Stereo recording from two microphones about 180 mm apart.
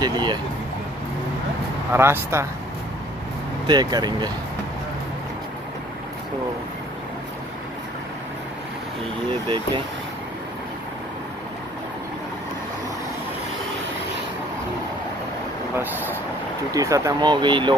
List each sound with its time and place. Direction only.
0.0 s speech: 25° right (ahead or behind)
1.9 s speech: 15° right (ahead or behind)
3.6 s speech: 25° right (ahead or behind)
15.8 s speech: 10° right (ahead or behind); by 17.7 s 25° right (ahead or behind)